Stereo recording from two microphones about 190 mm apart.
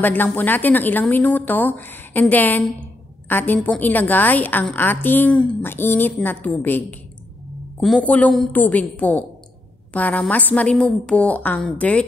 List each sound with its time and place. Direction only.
0.0 s a woman's voice: 10° left (ahead or behind)